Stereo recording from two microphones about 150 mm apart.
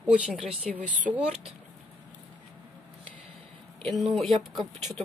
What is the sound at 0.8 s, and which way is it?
Speech, 55° right (ahead or behind).